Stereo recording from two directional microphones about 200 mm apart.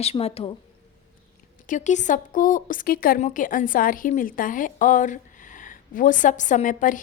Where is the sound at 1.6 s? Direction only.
40° left (ahead or behind).